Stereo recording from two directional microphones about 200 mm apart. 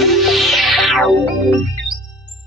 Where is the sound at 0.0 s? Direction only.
Centre (ahead or behind).